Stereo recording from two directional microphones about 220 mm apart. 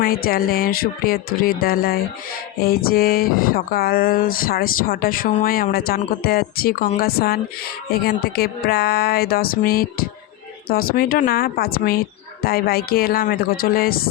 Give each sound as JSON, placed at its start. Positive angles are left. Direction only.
{"t": 0.0, "sound": "speech", "side_deg": 45}